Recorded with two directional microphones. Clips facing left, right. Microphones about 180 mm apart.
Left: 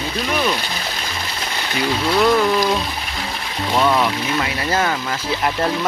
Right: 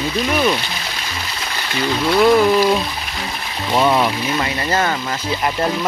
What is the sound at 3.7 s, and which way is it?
Speech, 15° right (ahead or behind).